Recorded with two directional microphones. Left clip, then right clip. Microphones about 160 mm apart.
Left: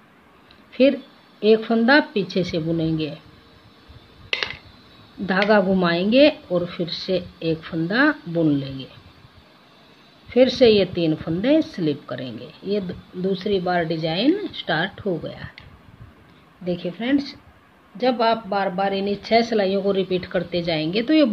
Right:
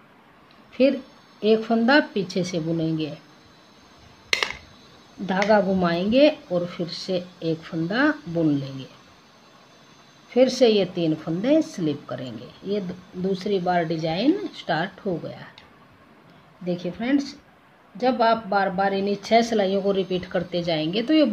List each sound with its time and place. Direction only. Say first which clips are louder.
1.4 s a woman's voice: left 3 dB; 15° left (ahead or behind)
5.2 s speech: left 2 dB; 20° left (ahead or behind)
10.3 s a woman's voice: left 3 dB; 15° left (ahead or behind)
16.6 s a woman's voice: left 2 dB; 10° left (ahead or behind)